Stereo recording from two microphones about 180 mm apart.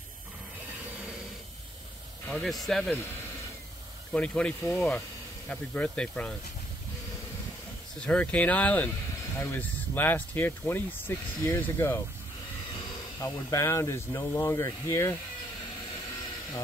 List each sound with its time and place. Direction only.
2.2 s speech: 5° left (ahead or behind)
4.1 s speech: 5° left (ahead or behind)
8.0 s speech: 5° left (ahead or behind)
13.2 s speech: 15° left (ahead or behind)